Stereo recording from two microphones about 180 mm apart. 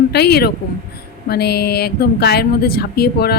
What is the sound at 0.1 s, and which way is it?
Speech, 65° left (ahead or behind).